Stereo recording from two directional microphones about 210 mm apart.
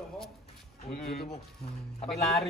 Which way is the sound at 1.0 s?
45° left (ahead or behind).